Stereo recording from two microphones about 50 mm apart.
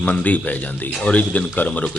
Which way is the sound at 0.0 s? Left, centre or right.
Left.